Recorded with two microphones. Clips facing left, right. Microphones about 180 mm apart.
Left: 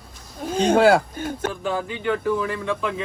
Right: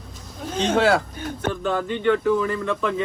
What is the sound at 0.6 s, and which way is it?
Speech, 45° left (ahead or behind).